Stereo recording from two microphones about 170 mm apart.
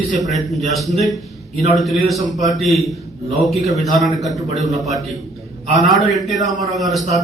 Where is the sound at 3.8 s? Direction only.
Centre (ahead or behind).